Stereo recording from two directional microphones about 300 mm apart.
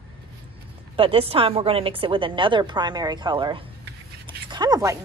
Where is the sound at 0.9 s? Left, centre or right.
Centre.